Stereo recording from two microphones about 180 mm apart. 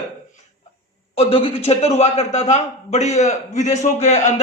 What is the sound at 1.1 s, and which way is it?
A man's voice, 30° left (ahead or behind).